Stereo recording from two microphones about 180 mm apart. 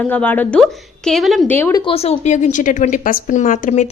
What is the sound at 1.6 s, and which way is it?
Speech, 15° left (ahead or behind).